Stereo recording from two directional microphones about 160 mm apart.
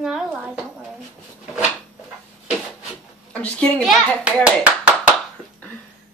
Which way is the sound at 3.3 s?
10° left (ahead or behind).